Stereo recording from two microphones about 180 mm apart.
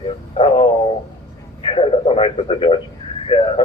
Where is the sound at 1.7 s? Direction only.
30° left (ahead or behind).